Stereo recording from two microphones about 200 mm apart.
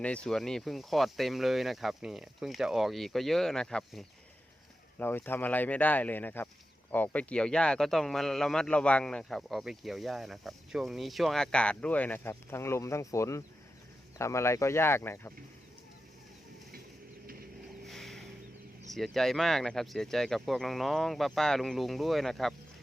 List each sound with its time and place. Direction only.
0.0 s speech: 5° left (ahead or behind)
17.8 s a sound: centre (ahead or behind)
18.9 s speech: centre (ahead or behind)